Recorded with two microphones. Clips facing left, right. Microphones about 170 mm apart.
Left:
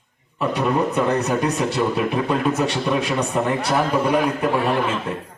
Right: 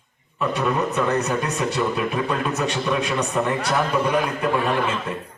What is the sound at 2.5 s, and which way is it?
Speech, 30° left (ahead or behind).